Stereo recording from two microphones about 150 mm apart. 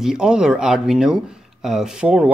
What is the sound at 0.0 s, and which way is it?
Speech, 5° right (ahead or behind).